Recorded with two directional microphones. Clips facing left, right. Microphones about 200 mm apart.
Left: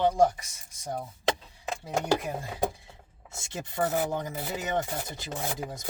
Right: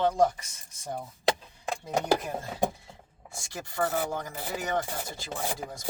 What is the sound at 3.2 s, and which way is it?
Speech, 25° left (ahead or behind).